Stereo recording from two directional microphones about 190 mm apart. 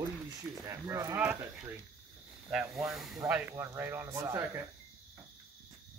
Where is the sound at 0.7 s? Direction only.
15° right (ahead or behind).